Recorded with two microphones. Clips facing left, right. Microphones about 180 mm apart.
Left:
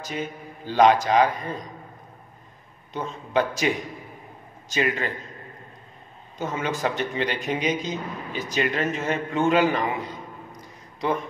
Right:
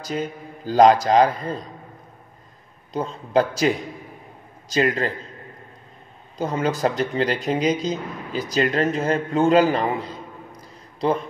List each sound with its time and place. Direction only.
0.0 s speech: 35° right (ahead or behind)
2.9 s speech: 35° right (ahead or behind)
6.3 s speech: 35° right (ahead or behind)
10.5 s a sound: 30° right (ahead or behind)